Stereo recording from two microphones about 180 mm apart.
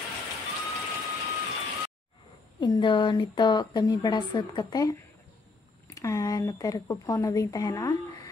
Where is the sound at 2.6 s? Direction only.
25° left (ahead or behind).